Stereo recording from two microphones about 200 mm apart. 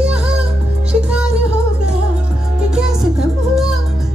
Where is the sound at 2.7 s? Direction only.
5° right (ahead or behind).